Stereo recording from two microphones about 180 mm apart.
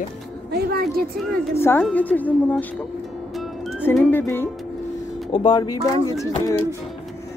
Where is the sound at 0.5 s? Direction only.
60° right (ahead or behind).